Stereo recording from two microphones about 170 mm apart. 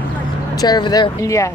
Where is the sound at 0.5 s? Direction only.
25° left (ahead or behind).